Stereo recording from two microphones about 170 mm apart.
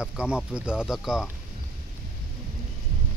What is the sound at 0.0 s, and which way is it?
Speech, 5° right (ahead or behind).